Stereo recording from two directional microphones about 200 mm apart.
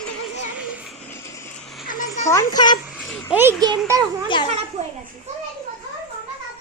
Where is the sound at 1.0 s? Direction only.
15° left (ahead or behind).